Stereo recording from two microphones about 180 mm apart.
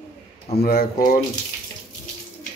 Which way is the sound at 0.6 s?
55° left (ahead or behind).